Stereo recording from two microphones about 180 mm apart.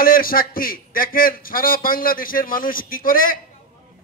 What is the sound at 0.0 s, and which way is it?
A man's voice, 55° left (ahead or behind).